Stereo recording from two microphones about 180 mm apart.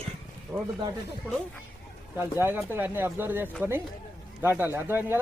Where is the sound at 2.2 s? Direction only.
10° right (ahead or behind).